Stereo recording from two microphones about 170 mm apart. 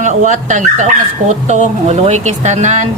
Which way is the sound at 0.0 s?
45° right (ahead or behind).